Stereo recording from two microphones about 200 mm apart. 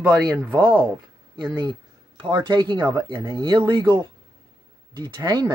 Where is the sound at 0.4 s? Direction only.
25° right (ahead or behind).